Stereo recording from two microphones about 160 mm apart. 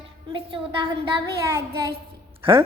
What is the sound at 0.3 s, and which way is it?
Speech, 35° right (ahead or behind).